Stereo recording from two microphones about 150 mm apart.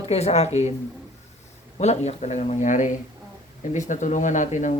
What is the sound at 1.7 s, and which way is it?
Speech, 45° left (ahead or behind).